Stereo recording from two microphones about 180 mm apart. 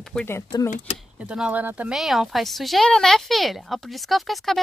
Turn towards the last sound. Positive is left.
turn(degrees=0)  # may be behind; listen again after turning